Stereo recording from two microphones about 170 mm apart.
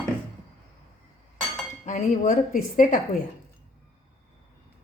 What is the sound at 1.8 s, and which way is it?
Speech, 50° left (ahead or behind).